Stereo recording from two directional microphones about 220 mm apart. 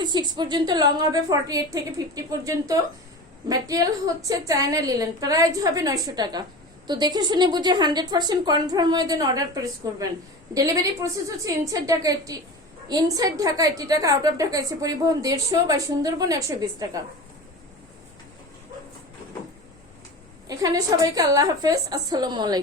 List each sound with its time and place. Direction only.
0.0 s a woman's voice: 20° right (ahead or behind)
20.5 s a woman's voice: 15° right (ahead or behind)